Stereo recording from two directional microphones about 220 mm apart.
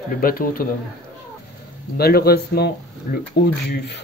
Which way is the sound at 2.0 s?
45° left (ahead or behind).